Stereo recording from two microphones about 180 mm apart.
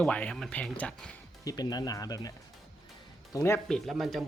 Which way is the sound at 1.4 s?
20° left (ahead or behind).